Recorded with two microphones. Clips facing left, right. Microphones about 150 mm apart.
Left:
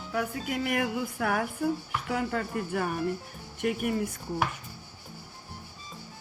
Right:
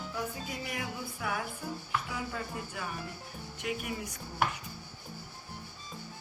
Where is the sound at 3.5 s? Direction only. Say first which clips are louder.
Left 8 dB; 55° left (ahead or behind).